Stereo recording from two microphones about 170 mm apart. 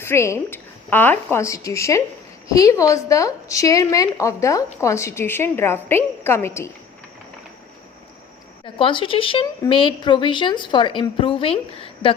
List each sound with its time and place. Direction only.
0.0 s a woman's voice: 15° left (ahead or behind)
8.6 s a woman's voice: 30° left (ahead or behind)